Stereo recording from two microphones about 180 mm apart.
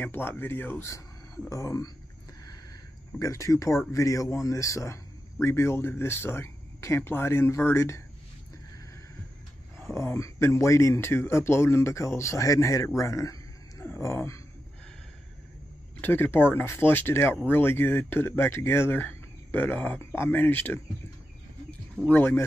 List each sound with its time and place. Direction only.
0.0 s speech: 10° left (ahead or behind)
3.2 s speech: 15° left (ahead or behind)
9.8 s speech: 15° left (ahead or behind)
16.0 s speech: 10° left (ahead or behind)
21.9 s speech: 10° left (ahead or behind)